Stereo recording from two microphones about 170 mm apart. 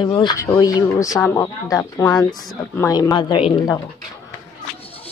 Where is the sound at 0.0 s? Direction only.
30° left (ahead or behind).